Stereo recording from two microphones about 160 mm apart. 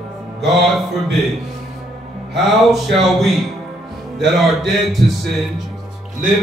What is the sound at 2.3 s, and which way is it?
A man's voice, centre (ahead or behind).